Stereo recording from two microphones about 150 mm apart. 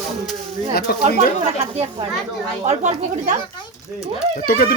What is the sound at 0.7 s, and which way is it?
Speech, 90° left.